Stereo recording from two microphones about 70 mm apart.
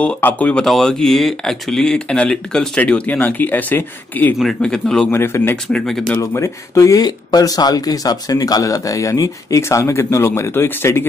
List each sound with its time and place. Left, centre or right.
0.0 s speech: left
0.7 s speech: centre; by 4.4 s left
4.6 s speech: centre
5.1 s speech: left
5.7 s speech: centre
6.3 s speech: left
7.1 s speech: left